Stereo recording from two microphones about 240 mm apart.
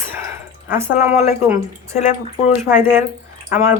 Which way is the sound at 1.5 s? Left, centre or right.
Centre.